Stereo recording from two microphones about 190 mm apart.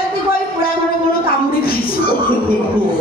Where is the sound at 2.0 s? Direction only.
50° left (ahead or behind).